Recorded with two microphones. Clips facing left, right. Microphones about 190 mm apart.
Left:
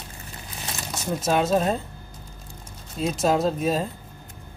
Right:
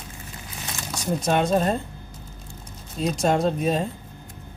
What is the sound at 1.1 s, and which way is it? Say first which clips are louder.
Speech: even; 5° left (ahead or behind).